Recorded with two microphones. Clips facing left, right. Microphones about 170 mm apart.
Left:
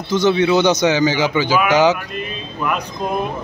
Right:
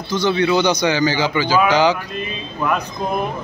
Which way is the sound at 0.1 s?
20° left (ahead or behind).